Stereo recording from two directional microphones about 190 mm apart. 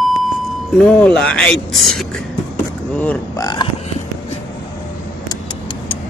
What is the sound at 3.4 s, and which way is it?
Speech, 20° left (ahead or behind).